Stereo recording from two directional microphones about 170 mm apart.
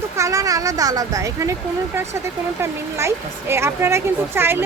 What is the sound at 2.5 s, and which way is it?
Speech, 15° right (ahead or behind).